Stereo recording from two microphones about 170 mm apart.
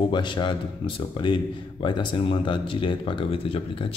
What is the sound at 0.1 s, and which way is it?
Speech, 25° left (ahead or behind).